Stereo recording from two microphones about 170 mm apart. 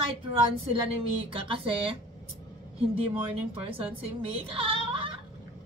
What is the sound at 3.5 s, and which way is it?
Speech, 35° right (ahead or behind).